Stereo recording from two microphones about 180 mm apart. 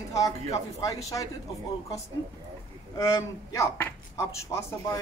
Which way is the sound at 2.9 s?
20° left (ahead or behind).